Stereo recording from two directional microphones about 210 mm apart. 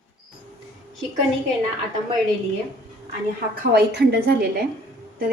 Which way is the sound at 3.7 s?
50° right (ahead or behind).